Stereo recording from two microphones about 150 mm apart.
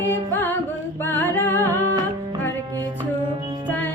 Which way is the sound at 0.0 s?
15° left (ahead or behind).